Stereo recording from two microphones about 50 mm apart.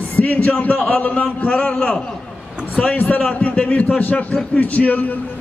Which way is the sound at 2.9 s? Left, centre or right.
Left.